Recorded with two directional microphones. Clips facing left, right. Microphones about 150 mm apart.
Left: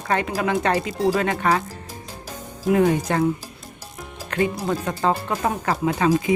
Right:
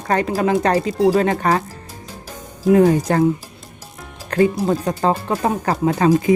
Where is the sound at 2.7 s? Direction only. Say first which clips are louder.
Right 5 dB; 35° right (ahead or behind).